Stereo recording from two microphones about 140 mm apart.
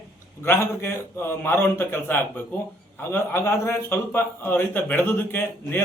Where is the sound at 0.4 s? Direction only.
15° left (ahead or behind).